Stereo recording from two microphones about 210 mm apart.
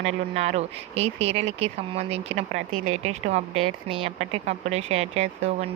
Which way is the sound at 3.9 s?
30° right (ahead or behind).